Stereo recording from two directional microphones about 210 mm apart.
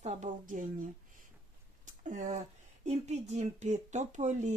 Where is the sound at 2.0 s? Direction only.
35° right (ahead or behind).